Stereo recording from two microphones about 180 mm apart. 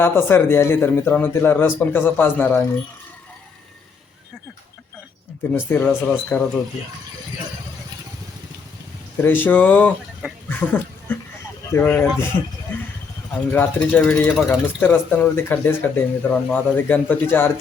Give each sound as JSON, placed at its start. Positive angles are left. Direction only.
{"t": 0.0, "sound": "speech", "side_deg": 10}
{"t": 5.5, "sound": "speech", "side_deg": 10}
{"t": 9.2, "sound": "speech", "side_deg": 10}
{"t": 13.5, "sound": "speech", "side_deg": 10}